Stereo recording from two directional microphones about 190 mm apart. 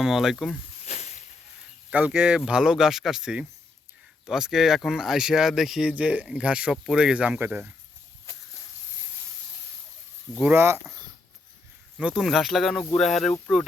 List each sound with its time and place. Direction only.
0.0 s speech: centre (ahead or behind)
0.9 s a sound: 35° left (ahead or behind)
1.9 s speech: 5° right (ahead or behind)
10.4 s speech: 10° right (ahead or behind)
11.9 s speech: centre (ahead or behind)